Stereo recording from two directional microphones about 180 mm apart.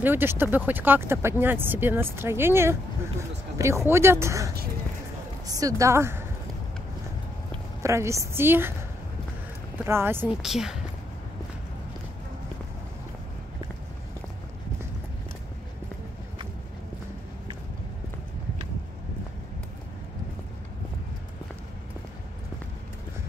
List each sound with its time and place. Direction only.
0.0 s speech: 10° right (ahead or behind)
5.5 s speech: 20° right (ahead or behind)
7.8 s speech: 15° right (ahead or behind)
9.8 s speech: 15° right (ahead or behind)